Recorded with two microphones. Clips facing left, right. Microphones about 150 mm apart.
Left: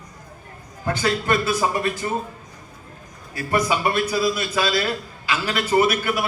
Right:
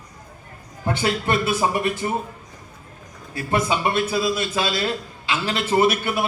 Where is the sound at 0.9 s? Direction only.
25° right (ahead or behind).